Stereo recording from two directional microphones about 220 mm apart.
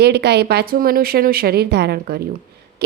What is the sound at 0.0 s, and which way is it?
Speech, 50° right (ahead or behind).